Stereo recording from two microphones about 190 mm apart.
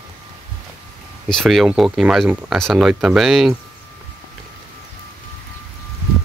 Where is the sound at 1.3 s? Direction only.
Centre (ahead or behind).